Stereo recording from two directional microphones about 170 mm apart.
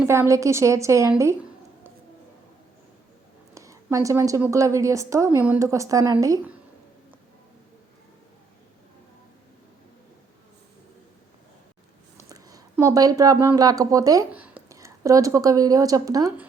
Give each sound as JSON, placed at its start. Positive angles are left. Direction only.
{"t": 0.0, "sound": "a woman's voice", "side_deg": -15}
{"t": 3.5, "sound": "a woman's voice", "side_deg": -20}
{"t": 12.1, "sound": "a sound", "side_deg": -20}
{"t": 12.7, "sound": "speech", "side_deg": -20}
{"t": 14.3, "sound": "a woman's voice", "side_deg": -10}